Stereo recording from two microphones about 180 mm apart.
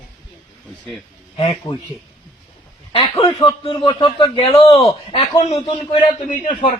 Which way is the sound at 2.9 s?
30° left (ahead or behind).